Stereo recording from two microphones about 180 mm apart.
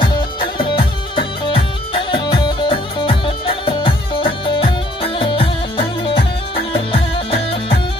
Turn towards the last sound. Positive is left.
turn(degrees=30)  # may be behind; listen again after turning